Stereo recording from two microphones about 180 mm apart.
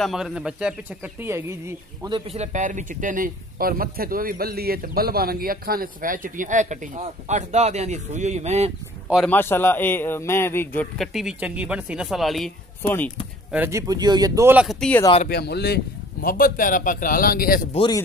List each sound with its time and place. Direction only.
0.0 s a man's voice: centre (ahead or behind)
2.0 s a man's voice: 30° right (ahead or behind)
9.1 s a man's voice: 5° left (ahead or behind)
11.1 s a man's voice: 5° right (ahead or behind)
12.8 s a man's voice: 10° left (ahead or behind)
13.5 s speech: 10° right (ahead or behind)
15.2 s a man's voice: 65° left (ahead or behind)
17.7 s speech: 25° left (ahead or behind)